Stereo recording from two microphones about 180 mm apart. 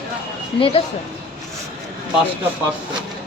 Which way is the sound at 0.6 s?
30° left (ahead or behind).